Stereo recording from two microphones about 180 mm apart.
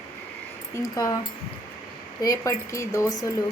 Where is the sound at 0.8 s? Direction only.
20° left (ahead or behind).